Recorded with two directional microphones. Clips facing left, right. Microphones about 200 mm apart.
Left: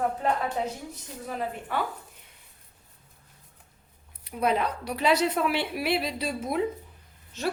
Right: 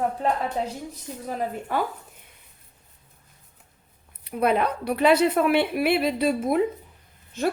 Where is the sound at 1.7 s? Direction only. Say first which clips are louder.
Right 4 dB; 45° right (ahead or behind).